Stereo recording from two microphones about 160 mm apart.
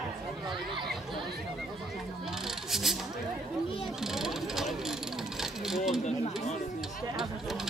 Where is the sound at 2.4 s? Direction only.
Centre (ahead or behind).